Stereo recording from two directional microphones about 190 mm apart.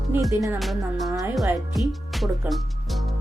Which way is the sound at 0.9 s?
Centre (ahead or behind).